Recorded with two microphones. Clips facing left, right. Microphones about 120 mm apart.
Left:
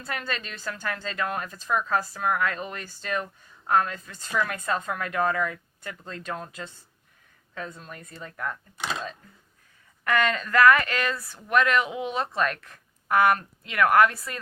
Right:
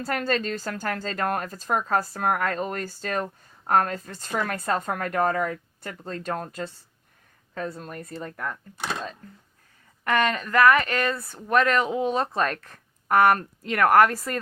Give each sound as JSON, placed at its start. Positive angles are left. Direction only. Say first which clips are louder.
{"t": 0.0, "sound": "speech", "louder": "right 7 dB", "side_deg": -40}
{"t": 10.0, "sound": "speech", "louder": "right 1 dB", "side_deg": -25}
{"t": 10.9, "sound": "speech", "louder": "right 3 dB", "side_deg": -50}
{"t": 11.3, "sound": "speech", "louder": "right 1 dB", "side_deg": -35}